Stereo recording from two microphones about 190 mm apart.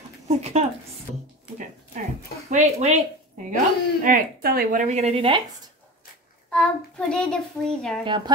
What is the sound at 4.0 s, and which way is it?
Speech, 50° right (ahead or behind).